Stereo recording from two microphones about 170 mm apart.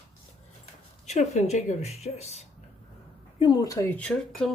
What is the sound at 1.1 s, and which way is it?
Speech, 40° left (ahead or behind).